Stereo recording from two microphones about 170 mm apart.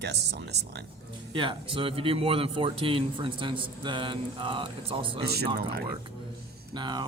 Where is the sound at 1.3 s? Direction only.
30° right (ahead or behind).